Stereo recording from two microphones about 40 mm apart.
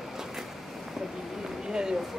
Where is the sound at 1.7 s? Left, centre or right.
Centre.